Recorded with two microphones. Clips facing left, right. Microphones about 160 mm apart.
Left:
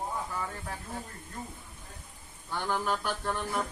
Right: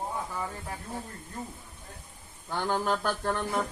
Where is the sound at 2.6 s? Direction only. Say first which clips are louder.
Right 3 dB; 40° right (ahead or behind).